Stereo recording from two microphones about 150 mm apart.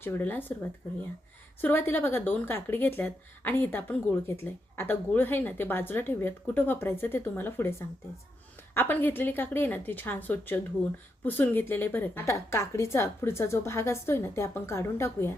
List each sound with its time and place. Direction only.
0.0 s a woman's voice: 10° left (ahead or behind)
1.6 s a woman's voice: 15° left (ahead or behind)